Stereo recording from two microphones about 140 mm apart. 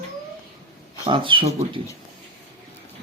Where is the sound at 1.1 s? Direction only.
35° right (ahead or behind).